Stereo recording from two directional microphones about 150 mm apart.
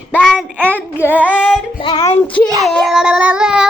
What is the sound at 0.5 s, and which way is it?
Child singing, 10° right (ahead or behind).